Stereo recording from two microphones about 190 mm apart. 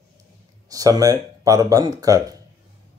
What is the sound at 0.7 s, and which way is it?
Speech, 20° right (ahead or behind).